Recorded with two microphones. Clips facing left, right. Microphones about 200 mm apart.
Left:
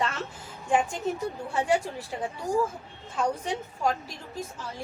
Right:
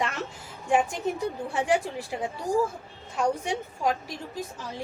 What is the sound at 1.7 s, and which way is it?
A woman's voice, 15° right (ahead or behind).